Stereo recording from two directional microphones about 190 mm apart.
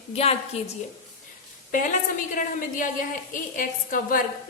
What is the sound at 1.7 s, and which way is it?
A woman's voice, 45° left (ahead or behind).